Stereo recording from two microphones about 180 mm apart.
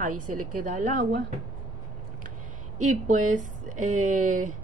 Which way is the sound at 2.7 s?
45° right (ahead or behind).